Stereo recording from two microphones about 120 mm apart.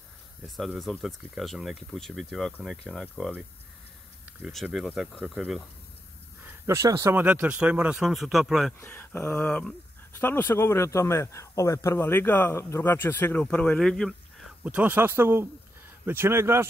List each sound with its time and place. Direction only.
0.6 s speech: centre (ahead or behind)
4.4 s speech: centre (ahead or behind)
6.4 s speech: 25° right (ahead or behind)
7.2 s speech: 10° right (ahead or behind)
8.7 s speech: 15° left (ahead or behind)
14.6 s speech: 10° right (ahead or behind)